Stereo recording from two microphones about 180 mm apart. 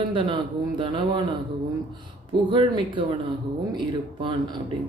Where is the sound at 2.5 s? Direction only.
25° right (ahead or behind).